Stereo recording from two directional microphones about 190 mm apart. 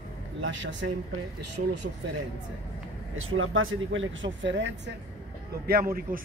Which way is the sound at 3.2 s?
90° right.